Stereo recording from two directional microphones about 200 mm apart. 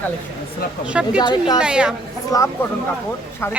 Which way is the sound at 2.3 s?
15° left (ahead or behind).